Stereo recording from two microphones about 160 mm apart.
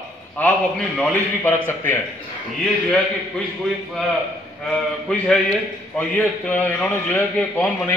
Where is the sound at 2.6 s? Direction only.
5° left (ahead or behind).